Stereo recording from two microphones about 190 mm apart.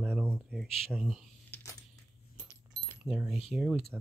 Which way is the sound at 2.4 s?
20° right (ahead or behind).